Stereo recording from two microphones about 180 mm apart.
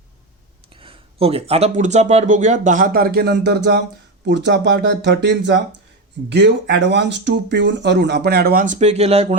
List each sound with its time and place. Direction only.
0.7 s speech: 30° right (ahead or behind)